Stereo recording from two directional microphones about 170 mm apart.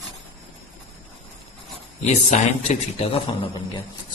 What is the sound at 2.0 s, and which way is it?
Speech, 40° left (ahead or behind).